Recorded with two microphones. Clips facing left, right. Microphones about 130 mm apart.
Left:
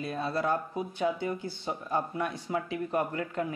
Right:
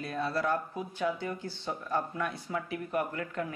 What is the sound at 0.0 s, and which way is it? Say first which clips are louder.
Speech: left 1 dB; 20° left (ahead or behind).